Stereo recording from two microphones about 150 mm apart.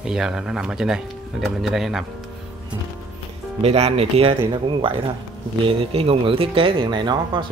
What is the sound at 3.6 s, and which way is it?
Speech, 45° right (ahead or behind).